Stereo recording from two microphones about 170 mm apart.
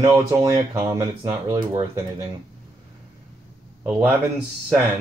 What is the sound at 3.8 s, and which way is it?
Speech, 10° right (ahead or behind).